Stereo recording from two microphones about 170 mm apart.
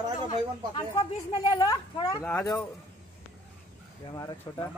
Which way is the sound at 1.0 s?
25° left (ahead or behind).